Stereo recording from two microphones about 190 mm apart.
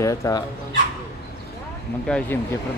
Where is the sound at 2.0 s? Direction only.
5° left (ahead or behind).